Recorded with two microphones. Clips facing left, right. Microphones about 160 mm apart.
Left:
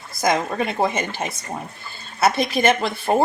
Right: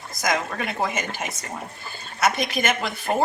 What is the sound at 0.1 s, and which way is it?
A woman's voice, 30° left (ahead or behind).